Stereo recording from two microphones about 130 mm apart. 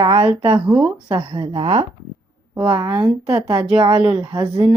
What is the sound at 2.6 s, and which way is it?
Speech, 30° right (ahead or behind).